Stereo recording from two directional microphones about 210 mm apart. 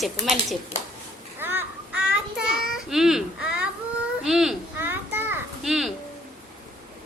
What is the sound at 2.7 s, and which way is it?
Speech, centre (ahead or behind).